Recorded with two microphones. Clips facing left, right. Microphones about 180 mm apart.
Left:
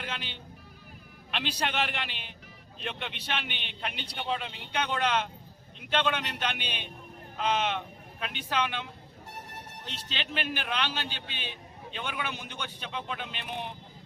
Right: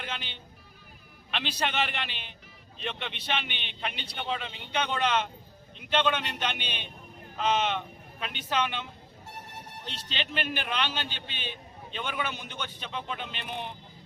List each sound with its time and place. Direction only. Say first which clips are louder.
0.0 s music: even; 5° left (ahead or behind)
1.3 s a man's voice: right 1 dB; 5° left (ahead or behind)